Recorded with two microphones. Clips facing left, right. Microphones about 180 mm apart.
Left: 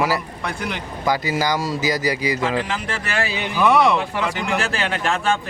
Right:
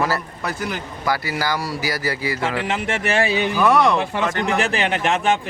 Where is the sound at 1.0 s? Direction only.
20° left (ahead or behind).